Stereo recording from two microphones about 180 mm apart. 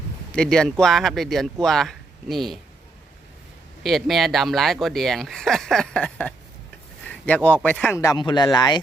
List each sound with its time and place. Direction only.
0.3 s speech: 5° left (ahead or behind)
3.8 s speech: centre (ahead or behind); by 8.8 s 25° left (ahead or behind)